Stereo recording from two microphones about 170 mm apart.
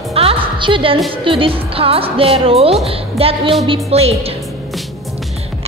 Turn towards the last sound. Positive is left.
turn(degrees=-35)  # may be behind; listen again after turning